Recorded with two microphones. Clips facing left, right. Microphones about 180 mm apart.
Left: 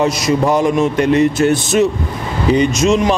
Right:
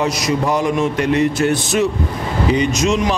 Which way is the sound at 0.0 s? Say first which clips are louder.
Left 4 dB; 25° left (ahead or behind).